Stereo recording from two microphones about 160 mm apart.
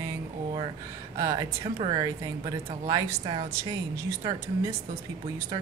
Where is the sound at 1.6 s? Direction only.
30° right (ahead or behind).